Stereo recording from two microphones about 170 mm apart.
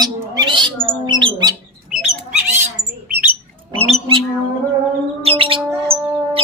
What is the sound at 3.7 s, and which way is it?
Squawk, 35° right (ahead or behind).